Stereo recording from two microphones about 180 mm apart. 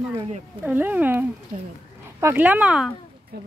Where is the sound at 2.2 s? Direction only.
10° right (ahead or behind).